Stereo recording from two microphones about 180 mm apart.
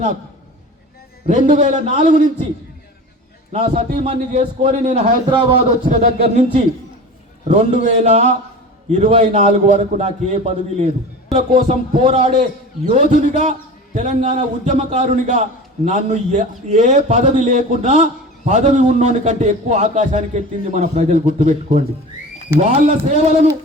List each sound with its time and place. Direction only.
1.3 s a man's voice: 45° right (ahead or behind)
3.5 s a man's voice: 40° right (ahead or behind)
5.3 s a man's voice: 25° right (ahead or behind)
5.8 s a man's voice: 40° right (ahead or behind)